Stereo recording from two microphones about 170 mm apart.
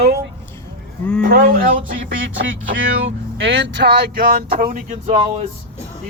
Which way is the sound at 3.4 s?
90° right.